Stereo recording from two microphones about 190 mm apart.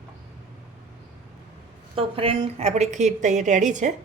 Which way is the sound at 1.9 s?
30° right (ahead or behind).